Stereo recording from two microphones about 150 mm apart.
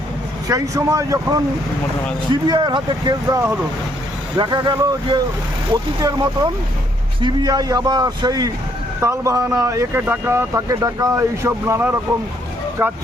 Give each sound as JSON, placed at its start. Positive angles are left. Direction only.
{"t": 0.4, "sound": "speech", "side_deg": -20}
{"t": 3.2, "sound": "speech", "side_deg": -20}
{"t": 4.4, "sound": "speech", "side_deg": -30}
{"t": 6.0, "sound": "speech", "side_deg": -25}